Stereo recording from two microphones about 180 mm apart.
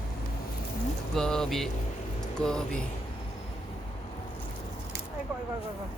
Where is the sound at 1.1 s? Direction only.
5° left (ahead or behind).